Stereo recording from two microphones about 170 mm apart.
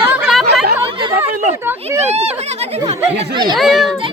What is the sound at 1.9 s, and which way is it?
Speech, 40° right (ahead or behind).